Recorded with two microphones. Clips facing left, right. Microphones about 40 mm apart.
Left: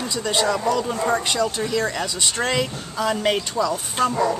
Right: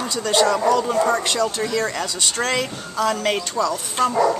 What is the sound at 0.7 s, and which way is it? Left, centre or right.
Speech, centre.